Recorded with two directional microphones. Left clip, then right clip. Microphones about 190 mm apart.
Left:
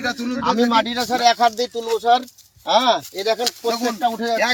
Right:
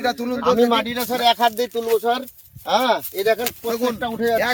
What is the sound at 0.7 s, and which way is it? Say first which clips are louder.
Speech: left 2 dB; 35° right (ahead or behind).